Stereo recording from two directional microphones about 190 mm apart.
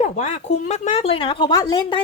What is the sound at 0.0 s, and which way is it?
Speech, 35° left (ahead or behind).